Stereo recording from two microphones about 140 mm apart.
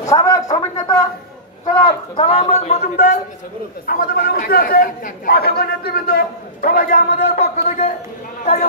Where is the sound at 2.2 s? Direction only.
40° left (ahead or behind).